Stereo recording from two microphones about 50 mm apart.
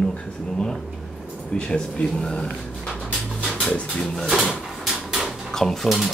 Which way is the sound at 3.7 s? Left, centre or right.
Centre.